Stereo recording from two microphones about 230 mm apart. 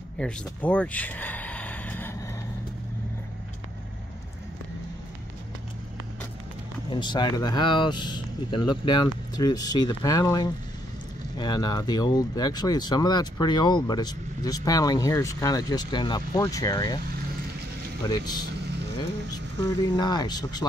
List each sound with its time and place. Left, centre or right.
0.2 s speech: centre
6.9 s speech: centre
18.0 s speech: centre